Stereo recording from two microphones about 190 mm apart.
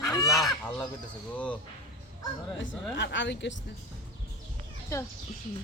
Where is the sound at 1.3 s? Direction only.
5° left (ahead or behind).